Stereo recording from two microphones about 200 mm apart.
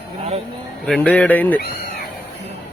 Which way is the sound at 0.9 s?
5° left (ahead or behind).